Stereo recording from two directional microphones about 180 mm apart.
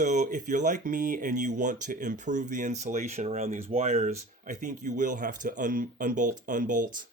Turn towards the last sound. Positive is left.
turn(degrees=-50)  # may be behind; listen again after turning